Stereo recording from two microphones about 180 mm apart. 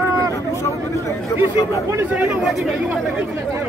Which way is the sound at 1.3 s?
15° left (ahead or behind).